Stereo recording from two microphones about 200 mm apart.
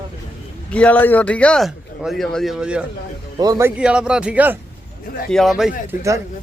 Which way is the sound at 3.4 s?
15° right (ahead or behind).